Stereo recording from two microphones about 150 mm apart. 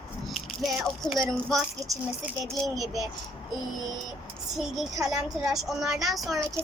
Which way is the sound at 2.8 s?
25° right (ahead or behind).